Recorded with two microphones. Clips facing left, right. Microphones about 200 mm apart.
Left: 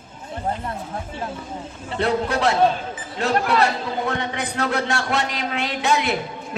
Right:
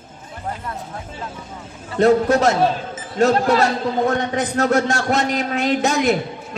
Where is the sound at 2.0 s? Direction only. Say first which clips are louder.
Right 7 dB; 45° right (ahead or behind).